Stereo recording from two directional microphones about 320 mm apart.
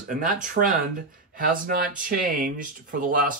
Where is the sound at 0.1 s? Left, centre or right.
Right.